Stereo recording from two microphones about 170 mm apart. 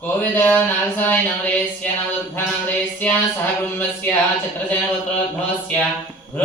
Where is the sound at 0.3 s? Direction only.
10° left (ahead or behind).